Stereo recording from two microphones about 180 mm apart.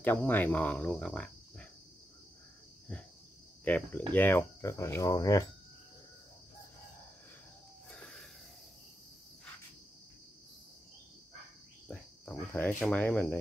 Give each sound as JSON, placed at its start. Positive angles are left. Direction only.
{"t": 0.0, "sound": "speech", "side_deg": 10}
{"t": 3.6, "sound": "speech", "side_deg": 10}
{"t": 7.9, "sound": "a sound", "side_deg": 5}
{"t": 11.9, "sound": "cricket", "side_deg": 10}
{"t": 12.8, "sound": "speech", "side_deg": 10}